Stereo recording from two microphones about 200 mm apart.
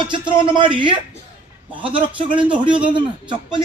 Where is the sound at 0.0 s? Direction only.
25° right (ahead or behind).